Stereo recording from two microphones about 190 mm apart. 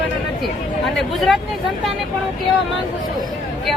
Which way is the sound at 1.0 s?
Centre (ahead or behind).